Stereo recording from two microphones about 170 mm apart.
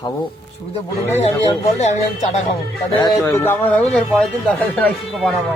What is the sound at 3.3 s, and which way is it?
Speech, 10° left (ahead or behind).